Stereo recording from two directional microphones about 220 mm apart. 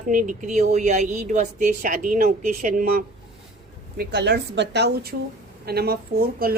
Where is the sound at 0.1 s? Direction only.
35° right (ahead or behind).